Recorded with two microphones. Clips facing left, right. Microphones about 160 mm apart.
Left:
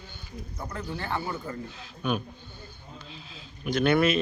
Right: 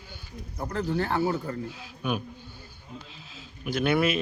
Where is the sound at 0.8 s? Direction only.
35° right (ahead or behind).